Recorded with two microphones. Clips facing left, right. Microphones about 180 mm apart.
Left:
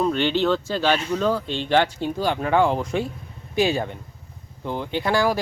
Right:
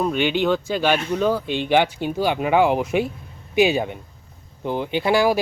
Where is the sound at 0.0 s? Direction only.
10° right (ahead or behind).